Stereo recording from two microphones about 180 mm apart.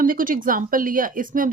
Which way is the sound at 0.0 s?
50° right (ahead or behind).